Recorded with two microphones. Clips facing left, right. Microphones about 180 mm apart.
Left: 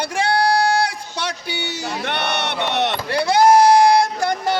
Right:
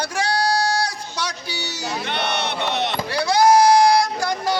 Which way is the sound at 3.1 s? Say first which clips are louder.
Left 2 dB; 55° left (ahead or behind).